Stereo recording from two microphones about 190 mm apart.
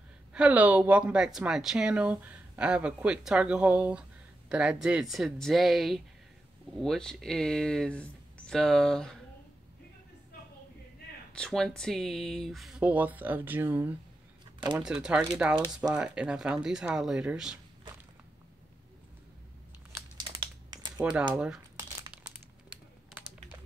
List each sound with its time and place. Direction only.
0.3 s speech: 5° right (ahead or behind)
11.3 s speech: 5° left (ahead or behind)
20.2 s crumpling: 20° right (ahead or behind)
21.0 s speech: 5° right (ahead or behind)
21.4 s crumpling: 5° right (ahead or behind)